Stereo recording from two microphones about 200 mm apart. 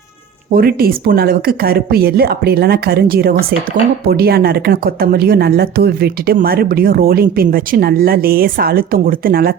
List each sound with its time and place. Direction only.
0.5 s speech: 50° right (ahead or behind)